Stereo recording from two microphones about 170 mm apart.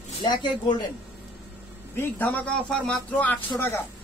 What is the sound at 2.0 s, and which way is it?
Speech, 10° left (ahead or behind).